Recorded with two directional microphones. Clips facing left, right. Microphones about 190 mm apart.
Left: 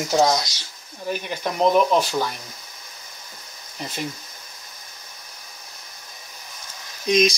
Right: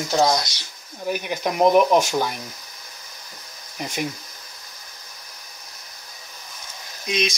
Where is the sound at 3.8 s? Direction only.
15° right (ahead or behind).